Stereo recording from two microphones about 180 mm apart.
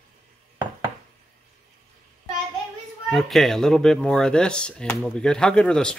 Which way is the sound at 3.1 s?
Centre (ahead or behind).